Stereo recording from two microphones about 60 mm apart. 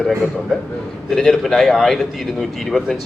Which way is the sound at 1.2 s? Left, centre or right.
Centre.